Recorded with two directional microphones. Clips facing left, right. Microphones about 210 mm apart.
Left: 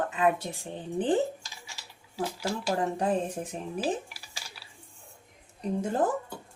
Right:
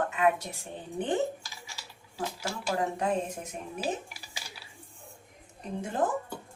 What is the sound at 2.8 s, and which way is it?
Speech, 30° left (ahead or behind).